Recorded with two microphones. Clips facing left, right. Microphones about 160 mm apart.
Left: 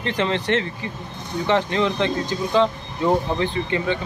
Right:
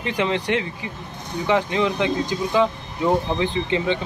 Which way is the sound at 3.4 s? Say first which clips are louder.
Right 1 dB; 20° right (ahead or behind).